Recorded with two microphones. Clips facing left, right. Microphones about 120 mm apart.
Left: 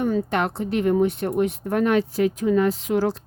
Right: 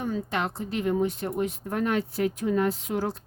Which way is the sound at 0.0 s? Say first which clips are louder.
Left 7 dB; 65° left (ahead or behind).